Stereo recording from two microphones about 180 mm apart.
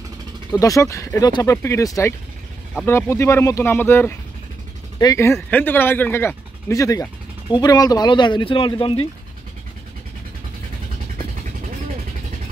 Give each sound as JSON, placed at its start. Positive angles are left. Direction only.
{"t": 0.5, "sound": "speech", "side_deg": 15}